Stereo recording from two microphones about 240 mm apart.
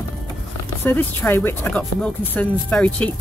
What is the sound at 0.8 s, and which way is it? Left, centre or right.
Speech, centre.